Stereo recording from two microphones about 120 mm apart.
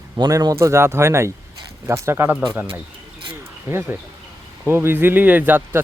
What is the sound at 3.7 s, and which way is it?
Speech, 20° right (ahead or behind).